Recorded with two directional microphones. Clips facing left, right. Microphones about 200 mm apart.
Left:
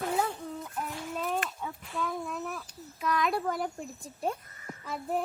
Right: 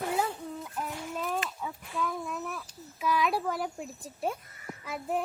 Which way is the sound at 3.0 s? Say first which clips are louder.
Right 1 dB; 5° right (ahead or behind).